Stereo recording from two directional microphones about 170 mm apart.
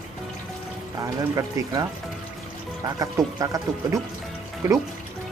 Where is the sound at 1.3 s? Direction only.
20° right (ahead or behind).